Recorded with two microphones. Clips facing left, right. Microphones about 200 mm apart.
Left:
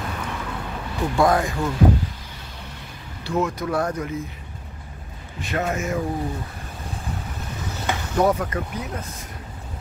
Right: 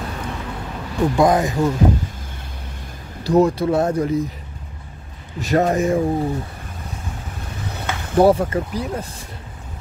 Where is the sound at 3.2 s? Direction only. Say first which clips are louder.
Right 8 dB; 35° right (ahead or behind).